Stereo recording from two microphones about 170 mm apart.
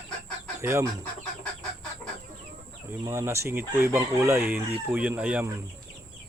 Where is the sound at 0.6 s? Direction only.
15° right (ahead or behind).